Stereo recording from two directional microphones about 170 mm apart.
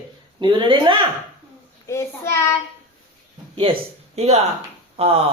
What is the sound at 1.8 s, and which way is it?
Speech, 15° left (ahead or behind).